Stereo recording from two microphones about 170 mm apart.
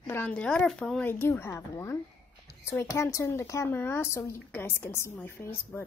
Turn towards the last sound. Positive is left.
turn(degrees=15)  # may be behind; listen again after turning